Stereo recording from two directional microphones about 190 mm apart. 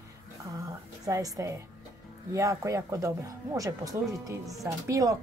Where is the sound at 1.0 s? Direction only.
20° right (ahead or behind).